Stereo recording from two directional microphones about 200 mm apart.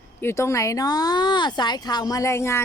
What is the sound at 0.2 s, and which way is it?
Speech, 15° left (ahead or behind).